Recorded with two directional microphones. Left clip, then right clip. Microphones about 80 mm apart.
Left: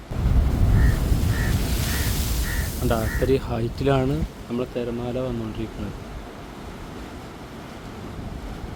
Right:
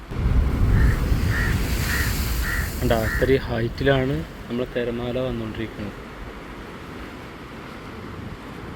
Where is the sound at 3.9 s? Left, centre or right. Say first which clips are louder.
Right 1 dB; left.